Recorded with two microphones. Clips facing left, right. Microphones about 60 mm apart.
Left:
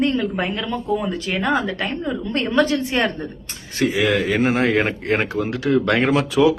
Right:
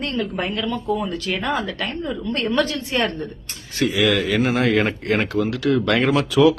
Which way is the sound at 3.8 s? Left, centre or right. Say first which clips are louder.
Even; left.